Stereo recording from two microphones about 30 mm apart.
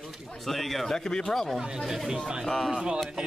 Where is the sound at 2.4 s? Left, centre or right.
Centre.